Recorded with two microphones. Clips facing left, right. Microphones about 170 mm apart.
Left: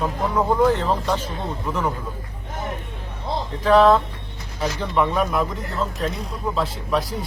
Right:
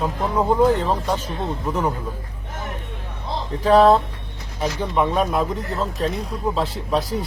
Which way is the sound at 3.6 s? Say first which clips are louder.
Right 1 dB; 35° right (ahead or behind).